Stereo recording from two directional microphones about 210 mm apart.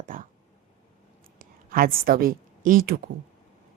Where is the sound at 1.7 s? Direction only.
45° right (ahead or behind).